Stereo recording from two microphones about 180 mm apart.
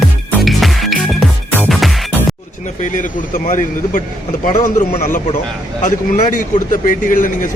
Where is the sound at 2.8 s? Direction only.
45° left (ahead or behind).